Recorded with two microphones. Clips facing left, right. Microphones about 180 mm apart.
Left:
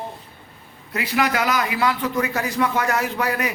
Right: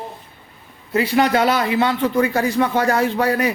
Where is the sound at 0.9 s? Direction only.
30° right (ahead or behind).